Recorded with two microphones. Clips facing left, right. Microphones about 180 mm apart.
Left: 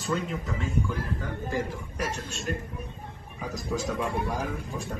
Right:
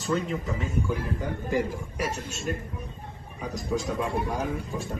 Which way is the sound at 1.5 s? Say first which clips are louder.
Right 5 dB; 10° right (ahead or behind).